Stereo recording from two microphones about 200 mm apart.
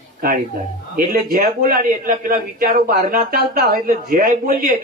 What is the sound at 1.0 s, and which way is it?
A man's voice, 45° right (ahead or behind).